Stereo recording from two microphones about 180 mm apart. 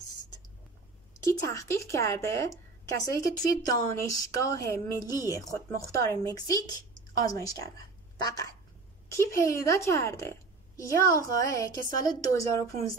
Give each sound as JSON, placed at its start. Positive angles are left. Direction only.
{"t": 1.2, "sound": "a woman's voice", "side_deg": 20}